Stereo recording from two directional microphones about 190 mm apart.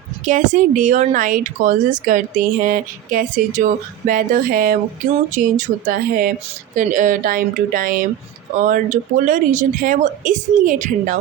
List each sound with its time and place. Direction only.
0.3 s a woman's voice: 40° right (ahead or behind)